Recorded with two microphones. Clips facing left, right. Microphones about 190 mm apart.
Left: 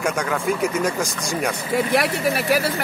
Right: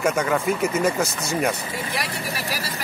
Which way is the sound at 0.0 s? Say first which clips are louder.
Right 1 dB; 5° right (ahead or behind).